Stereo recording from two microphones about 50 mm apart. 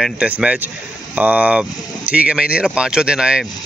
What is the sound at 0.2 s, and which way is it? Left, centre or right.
Speech, right.